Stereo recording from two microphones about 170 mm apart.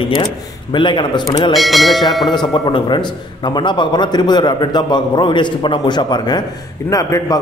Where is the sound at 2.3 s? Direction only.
25° left (ahead or behind).